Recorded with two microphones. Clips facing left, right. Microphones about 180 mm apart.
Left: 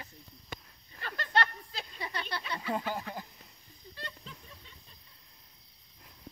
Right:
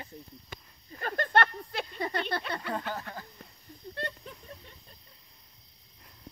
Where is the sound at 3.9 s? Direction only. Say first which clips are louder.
Right 8 dB; 60° right (ahead or behind).